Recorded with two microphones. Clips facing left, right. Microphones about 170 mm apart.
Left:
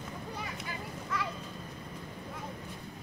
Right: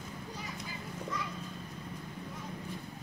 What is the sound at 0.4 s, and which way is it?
Children playing, 70° left (ahead or behind).